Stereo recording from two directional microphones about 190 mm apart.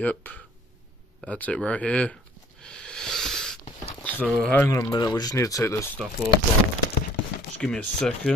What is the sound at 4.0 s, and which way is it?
Speech, 10° left (ahead or behind).